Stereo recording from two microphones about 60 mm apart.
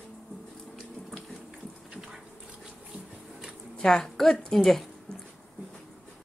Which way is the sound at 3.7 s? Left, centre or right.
Centre.